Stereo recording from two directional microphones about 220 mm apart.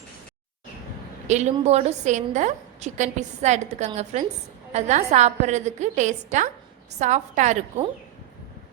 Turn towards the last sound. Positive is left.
turn(degrees=-30)  # may be behind; listen again after turning